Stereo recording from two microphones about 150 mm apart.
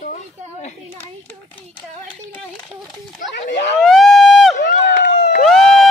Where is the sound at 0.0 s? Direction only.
60° left (ahead or behind).